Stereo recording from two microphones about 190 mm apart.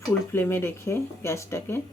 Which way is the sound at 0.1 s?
10° left (ahead or behind).